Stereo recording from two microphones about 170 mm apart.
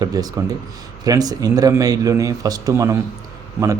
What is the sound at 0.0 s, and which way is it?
A man's voice, 20° right (ahead or behind).